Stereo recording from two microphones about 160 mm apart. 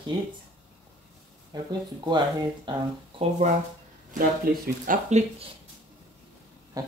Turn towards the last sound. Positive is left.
turn(degrees=-25)  # may be behind; listen again after turning